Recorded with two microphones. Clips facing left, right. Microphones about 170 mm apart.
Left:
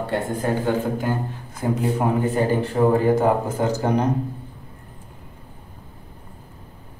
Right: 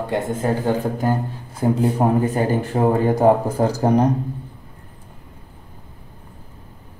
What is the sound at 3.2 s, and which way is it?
Speech, 35° right (ahead or behind).